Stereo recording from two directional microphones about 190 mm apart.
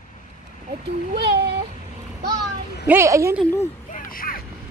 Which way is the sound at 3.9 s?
45° left (ahead or behind).